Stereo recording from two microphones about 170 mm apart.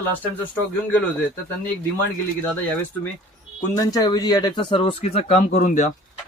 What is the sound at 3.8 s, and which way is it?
Speech, 20° left (ahead or behind).